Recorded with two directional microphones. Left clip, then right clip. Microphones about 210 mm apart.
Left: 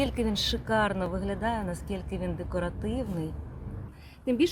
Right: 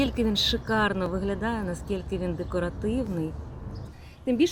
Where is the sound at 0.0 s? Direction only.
5° left (ahead or behind).